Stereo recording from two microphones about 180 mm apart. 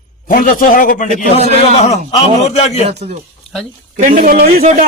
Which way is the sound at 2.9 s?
35° right (ahead or behind).